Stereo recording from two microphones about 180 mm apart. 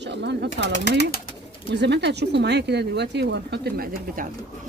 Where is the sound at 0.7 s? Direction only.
70° left (ahead or behind).